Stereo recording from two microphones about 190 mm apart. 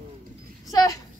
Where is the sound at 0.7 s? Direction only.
20° left (ahead or behind).